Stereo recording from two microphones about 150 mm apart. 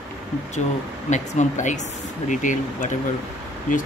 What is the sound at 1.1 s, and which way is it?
Speech, 55° left (ahead or behind).